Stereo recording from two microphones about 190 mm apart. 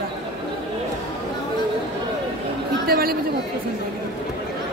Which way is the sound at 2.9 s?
50° right (ahead or behind).